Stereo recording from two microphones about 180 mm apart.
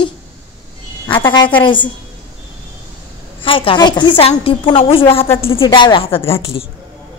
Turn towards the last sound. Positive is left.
turn(degrees=30)  # may be behind; listen again after turning